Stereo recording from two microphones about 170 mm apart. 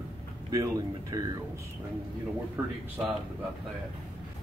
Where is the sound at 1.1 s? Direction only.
20° right (ahead or behind).